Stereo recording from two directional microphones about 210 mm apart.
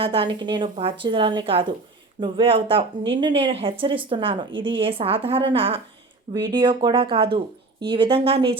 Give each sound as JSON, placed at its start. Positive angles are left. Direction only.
{"t": 0.0, "sound": "speech", "side_deg": -25}